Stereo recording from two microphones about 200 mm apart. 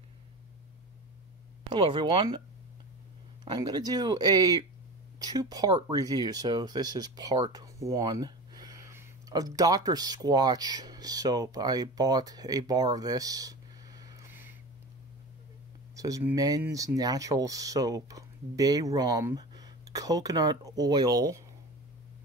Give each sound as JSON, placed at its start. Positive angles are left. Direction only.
{"t": 1.7, "sound": "speech", "side_deg": -25}
{"t": 3.4, "sound": "speech", "side_deg": -20}
{"t": 16.0, "sound": "speech", "side_deg": -15}